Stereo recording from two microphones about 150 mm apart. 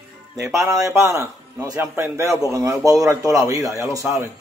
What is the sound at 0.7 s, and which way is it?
A man's voice, 20° right (ahead or behind).